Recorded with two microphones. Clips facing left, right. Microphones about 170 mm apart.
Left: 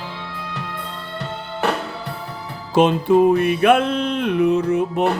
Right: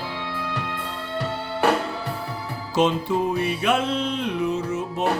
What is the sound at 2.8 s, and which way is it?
Music, 55° left (ahead or behind).